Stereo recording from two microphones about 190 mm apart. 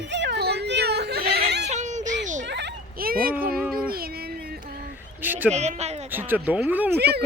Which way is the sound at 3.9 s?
55° right (ahead or behind).